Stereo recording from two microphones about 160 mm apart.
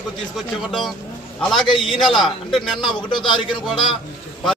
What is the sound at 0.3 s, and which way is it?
A man's voice, centre (ahead or behind).